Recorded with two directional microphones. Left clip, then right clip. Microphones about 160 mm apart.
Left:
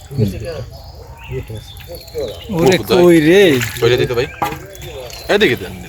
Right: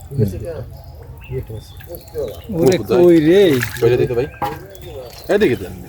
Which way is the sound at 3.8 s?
35° right (ahead or behind).